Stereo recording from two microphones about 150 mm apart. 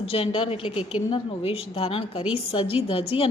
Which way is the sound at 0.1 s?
40° left (ahead or behind).